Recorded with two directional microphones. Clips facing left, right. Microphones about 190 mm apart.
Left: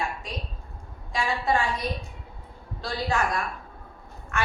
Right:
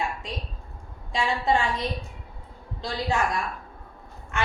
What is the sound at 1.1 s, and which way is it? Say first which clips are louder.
Speech: right 1 dB; 25° right (ahead or behind).